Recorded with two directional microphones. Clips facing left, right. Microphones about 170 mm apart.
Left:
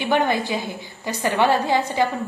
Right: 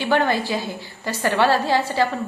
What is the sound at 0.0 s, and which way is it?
A woman's voice, 20° left (ahead or behind).